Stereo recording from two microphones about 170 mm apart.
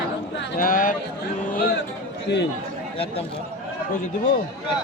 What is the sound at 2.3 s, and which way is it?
Speech, 85° left.